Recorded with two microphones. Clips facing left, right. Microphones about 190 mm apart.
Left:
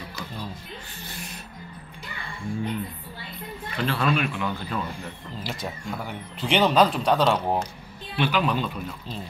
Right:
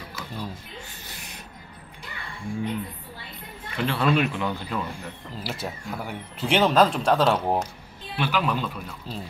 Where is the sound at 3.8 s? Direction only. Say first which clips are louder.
Right 2 dB; 20° right (ahead or behind).